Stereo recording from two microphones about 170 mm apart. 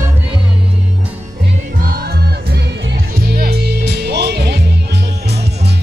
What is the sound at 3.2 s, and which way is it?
Music, 65° right (ahead or behind).